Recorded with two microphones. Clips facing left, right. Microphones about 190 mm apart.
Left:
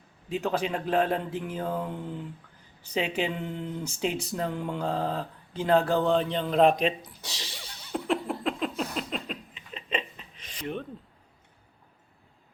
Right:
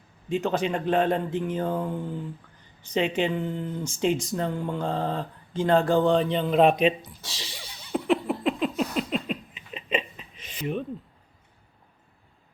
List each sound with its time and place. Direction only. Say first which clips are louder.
0.3 s speech: right 3 dB; 5° left (ahead or behind)
2.9 s speech: right 4 dB; 5° left (ahead or behind)
7.9 s a sound: right 4 dB; 5° right (ahead or behind)